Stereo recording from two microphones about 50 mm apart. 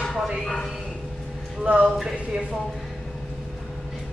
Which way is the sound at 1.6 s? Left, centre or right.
Right.